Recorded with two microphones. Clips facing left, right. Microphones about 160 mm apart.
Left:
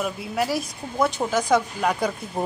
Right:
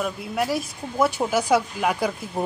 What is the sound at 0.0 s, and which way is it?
Speech, centre (ahead or behind).